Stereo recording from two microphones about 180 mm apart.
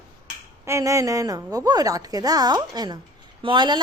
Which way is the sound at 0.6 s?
15° right (ahead or behind).